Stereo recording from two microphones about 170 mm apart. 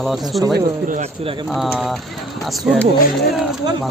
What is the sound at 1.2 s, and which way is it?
Speech, 30° right (ahead or behind).